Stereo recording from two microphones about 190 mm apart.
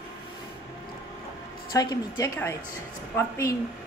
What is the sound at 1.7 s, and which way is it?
A woman's voice, 20° left (ahead or behind).